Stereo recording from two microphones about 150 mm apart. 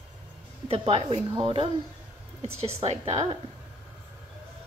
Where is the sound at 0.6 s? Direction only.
40° right (ahead or behind).